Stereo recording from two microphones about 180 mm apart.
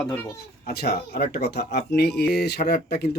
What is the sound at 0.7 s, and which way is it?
Speech, 60° left (ahead or behind).